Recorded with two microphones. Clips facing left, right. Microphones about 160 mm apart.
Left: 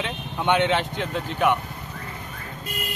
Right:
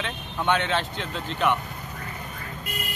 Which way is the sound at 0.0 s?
15° left (ahead or behind).